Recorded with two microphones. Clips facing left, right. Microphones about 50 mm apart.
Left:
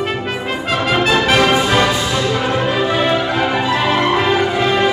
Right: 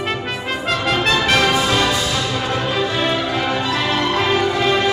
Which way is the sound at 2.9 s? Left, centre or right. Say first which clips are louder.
Left 4 dB; centre.